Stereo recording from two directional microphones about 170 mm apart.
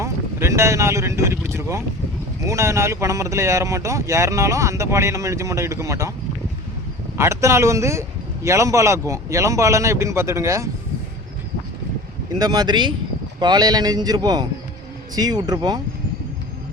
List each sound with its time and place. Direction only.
0.0 s speech: 15° right (ahead or behind)
7.2 s speech: 15° right (ahead or behind)
12.4 s a man's voice: 25° right (ahead or behind)